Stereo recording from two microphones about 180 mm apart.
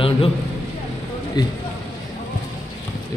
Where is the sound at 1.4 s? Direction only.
25° left (ahead or behind).